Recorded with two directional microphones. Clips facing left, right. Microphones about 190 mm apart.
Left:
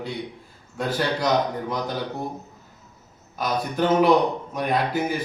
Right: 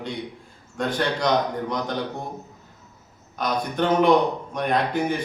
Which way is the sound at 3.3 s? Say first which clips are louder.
Even; 5° left (ahead or behind).